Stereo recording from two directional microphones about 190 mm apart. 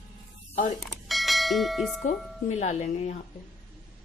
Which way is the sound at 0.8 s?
Centre (ahead or behind).